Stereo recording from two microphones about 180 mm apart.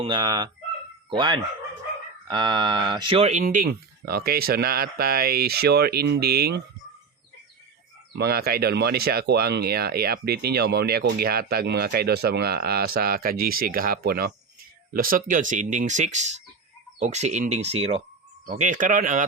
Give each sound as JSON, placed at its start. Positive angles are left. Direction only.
{"t": 0.0, "sound": "speech", "side_deg": -25}
{"t": 3.4, "sound": "speech", "side_deg": -50}
{"t": 8.2, "sound": "speech", "side_deg": -60}